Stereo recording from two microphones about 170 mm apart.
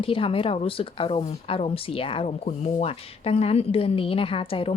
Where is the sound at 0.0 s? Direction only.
30° left (ahead or behind).